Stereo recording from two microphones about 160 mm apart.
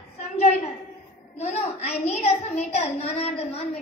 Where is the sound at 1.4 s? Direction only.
45° left (ahead or behind).